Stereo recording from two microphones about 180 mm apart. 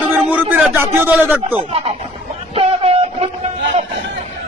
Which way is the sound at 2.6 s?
35° right (ahead or behind).